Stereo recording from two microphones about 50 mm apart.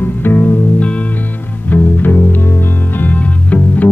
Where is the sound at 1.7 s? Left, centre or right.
Left.